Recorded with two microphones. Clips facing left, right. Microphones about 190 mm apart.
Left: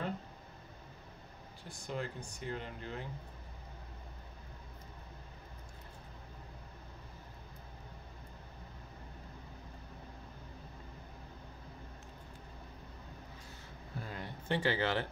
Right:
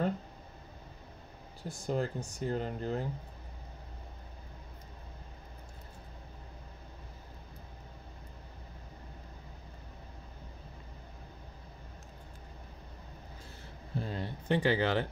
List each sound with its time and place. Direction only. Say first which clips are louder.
1.6 s speech: right 7 dB; 40° right (ahead or behind)
13.9 s a sound: right 7 dB; 25° right (ahead or behind)
14.5 s speech: right 4 dB; 15° right (ahead or behind)